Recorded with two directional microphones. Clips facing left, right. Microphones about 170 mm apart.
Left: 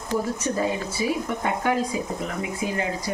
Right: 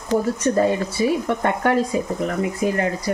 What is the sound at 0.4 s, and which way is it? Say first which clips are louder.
Speech: right 7 dB; 60° right (ahead or behind).